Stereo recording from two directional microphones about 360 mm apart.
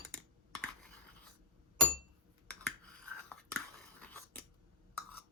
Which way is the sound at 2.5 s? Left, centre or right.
Centre.